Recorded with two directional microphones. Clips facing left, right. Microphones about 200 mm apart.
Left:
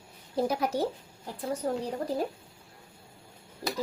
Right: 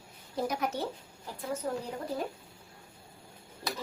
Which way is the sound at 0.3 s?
30° left (ahead or behind).